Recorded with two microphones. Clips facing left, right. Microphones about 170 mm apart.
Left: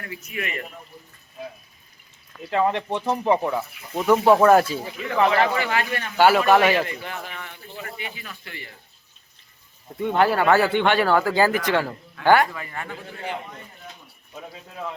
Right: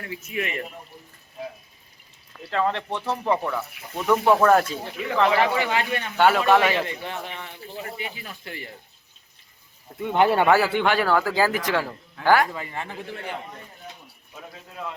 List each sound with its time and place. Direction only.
0.0 s speech: 25° right (ahead or behind)
2.5 s speech: 15° left (ahead or behind)
5.3 s speech: 15° right (ahead or behind)
6.1 s speech: 5° left (ahead or behind)
7.1 s speech: 25° right (ahead or behind)
7.9 s speech: 35° right (ahead or behind)
10.2 s speech: 25° right (ahead or behind)
10.4 s speech: 5° right (ahead or behind)
12.5 s speech: 25° right (ahead or behind)